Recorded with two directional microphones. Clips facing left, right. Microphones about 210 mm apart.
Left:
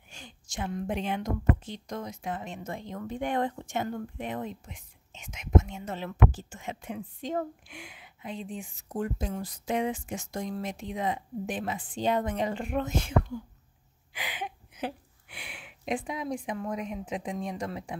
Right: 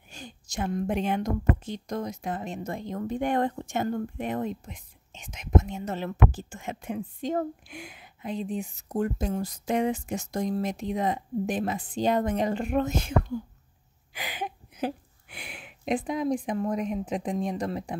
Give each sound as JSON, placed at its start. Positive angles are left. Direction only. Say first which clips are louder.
{"t": 0.1, "sound": "a woman's voice", "louder": "right 4 dB", "side_deg": -40}
{"t": 14.1, "sound": "a woman's voice", "louder": "right 3 dB", "side_deg": -40}